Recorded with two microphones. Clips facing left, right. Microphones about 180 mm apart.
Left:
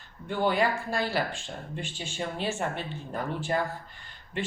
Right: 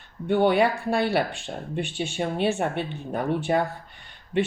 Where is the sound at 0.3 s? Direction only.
65° right (ahead or behind).